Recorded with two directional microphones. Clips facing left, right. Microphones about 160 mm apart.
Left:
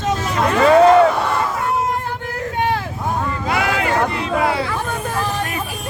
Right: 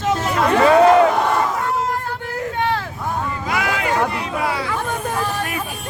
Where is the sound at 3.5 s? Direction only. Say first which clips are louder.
Left 3 dB; 30° left (ahead or behind).